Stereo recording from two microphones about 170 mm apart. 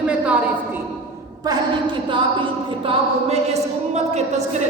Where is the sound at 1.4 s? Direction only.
25° right (ahead or behind).